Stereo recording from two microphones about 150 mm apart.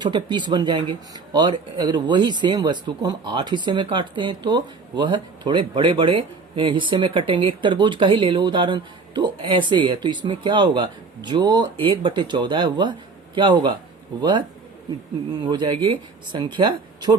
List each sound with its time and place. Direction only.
0.0 s speech: 30° right (ahead or behind)